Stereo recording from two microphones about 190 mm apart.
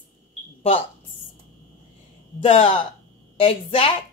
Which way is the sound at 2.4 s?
30° left (ahead or behind).